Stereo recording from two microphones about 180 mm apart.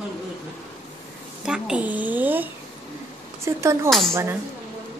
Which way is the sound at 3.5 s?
15° right (ahead or behind).